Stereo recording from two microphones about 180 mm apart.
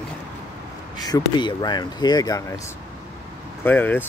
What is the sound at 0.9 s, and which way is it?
Speech, 20° left (ahead or behind).